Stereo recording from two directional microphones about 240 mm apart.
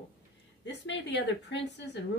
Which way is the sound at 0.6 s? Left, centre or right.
Left.